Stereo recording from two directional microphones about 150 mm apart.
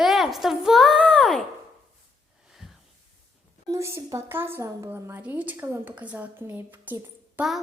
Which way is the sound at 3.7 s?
20° right (ahead or behind).